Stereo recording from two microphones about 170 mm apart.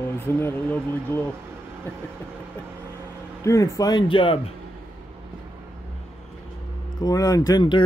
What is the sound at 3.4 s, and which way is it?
Speech, 20° left (ahead or behind).